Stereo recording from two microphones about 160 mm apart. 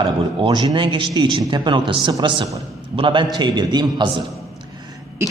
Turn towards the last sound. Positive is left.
turn(degrees=-15)  # may be behind; listen again after turning